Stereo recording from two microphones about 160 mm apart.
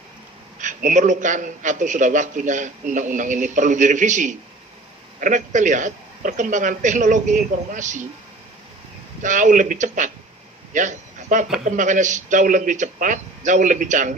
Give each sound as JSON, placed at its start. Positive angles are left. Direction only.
{"t": 0.6, "sound": "a man's voice", "side_deg": -50}
{"t": 9.2, "sound": "a man's voice", "side_deg": -50}